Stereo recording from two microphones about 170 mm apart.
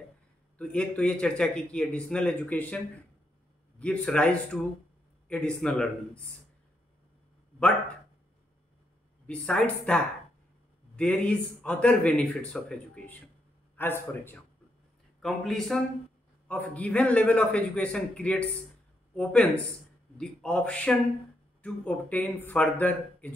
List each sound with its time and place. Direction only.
0.6 s a man's voice: 5° left (ahead or behind)
3.8 s a man's voice: 5° left (ahead or behind)
9.3 s a man's voice: 5° left (ahead or behind)
15.2 s a man's voice: centre (ahead or behind)